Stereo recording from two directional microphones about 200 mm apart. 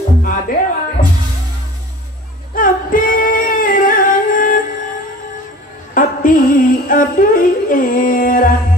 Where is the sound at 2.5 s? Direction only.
45° left (ahead or behind).